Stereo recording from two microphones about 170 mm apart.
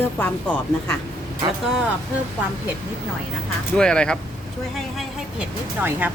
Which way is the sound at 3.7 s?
5° left (ahead or behind).